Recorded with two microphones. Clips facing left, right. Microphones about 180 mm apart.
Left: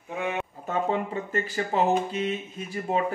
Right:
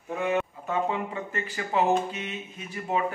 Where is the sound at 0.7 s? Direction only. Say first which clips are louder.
Left 1 dB; 35° left (ahead or behind).